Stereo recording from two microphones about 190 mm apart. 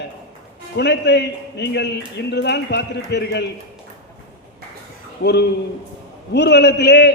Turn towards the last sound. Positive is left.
turn(degrees=60)  # may be behind; listen again after turning